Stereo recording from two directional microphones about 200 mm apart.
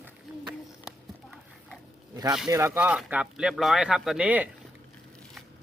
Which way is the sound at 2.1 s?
20° right (ahead or behind).